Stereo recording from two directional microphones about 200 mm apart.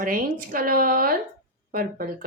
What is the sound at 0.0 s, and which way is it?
Speech, 45° right (ahead or behind).